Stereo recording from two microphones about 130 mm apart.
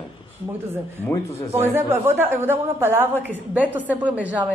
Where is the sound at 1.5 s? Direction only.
20° right (ahead or behind).